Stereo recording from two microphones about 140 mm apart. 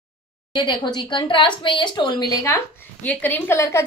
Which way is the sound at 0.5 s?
30° left (ahead or behind).